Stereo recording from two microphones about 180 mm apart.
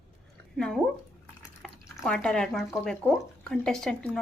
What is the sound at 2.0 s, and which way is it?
Speech, 5° left (ahead or behind).